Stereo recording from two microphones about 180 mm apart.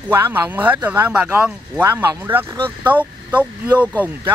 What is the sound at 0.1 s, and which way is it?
Speech, 10° right (ahead or behind).